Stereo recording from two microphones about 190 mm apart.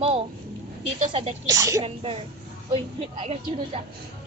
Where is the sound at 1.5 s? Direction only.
15° right (ahead or behind).